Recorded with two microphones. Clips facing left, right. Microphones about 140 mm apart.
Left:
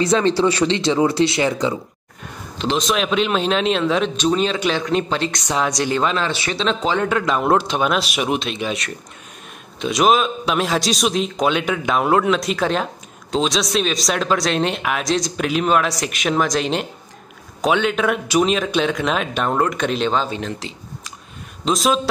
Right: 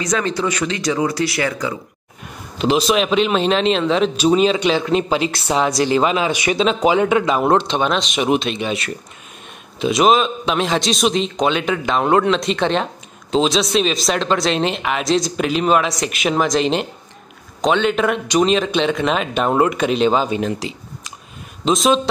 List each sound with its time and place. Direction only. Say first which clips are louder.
0.0 s speech: left 4 dB; 30° left (ahead or behind)
2.6 s speech: right 4 dB; 5° right (ahead or behind)
7.5 s speech: right 1 dB; 5° left (ahead or behind); by 20.7 s 10° right (ahead or behind)
21.6 s speech: right 3 dB; centre (ahead or behind)